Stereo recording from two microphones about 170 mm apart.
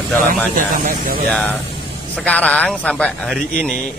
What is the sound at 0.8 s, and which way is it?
Speech, 55° right (ahead or behind).